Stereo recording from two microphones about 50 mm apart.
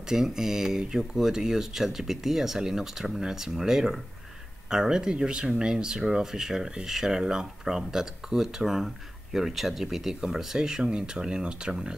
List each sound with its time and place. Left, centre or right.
0.1 s speech: centre